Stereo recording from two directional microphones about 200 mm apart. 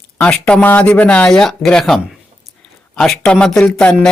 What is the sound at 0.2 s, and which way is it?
Speech, 5° left (ahead or behind).